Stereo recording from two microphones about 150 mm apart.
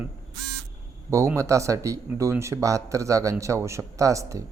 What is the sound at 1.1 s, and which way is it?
Speech, 20° right (ahead or behind).